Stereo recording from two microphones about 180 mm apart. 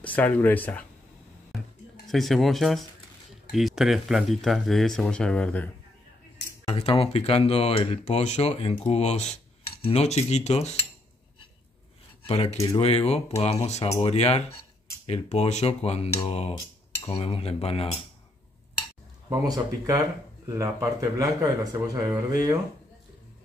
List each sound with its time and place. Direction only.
0.0 s speech: 10° left (ahead or behind)
2.0 s speech: centre (ahead or behind)
6.7 s speech: 30° left (ahead or behind)
8.8 s cutlery: 35° left (ahead or behind)
12.3 s speech: 35° left (ahead or behind)
12.5 s speech: 20° left (ahead or behind)
12.8 s speech: 35° left (ahead or behind)
19.2 s speech: 20° right (ahead or behind)